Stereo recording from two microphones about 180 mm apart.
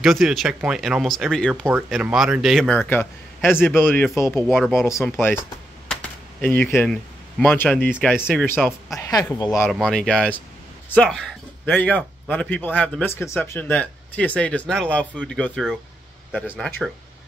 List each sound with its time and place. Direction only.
0.0 s a man's voice: centre (ahead or behind)
4.5 s speech: 5° right (ahead or behind)
6.4 s a man's voice: 10° left (ahead or behind)
9.7 s a man's voice: centre (ahead or behind)